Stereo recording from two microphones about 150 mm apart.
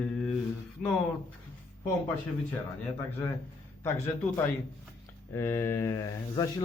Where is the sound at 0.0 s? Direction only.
5° left (ahead or behind).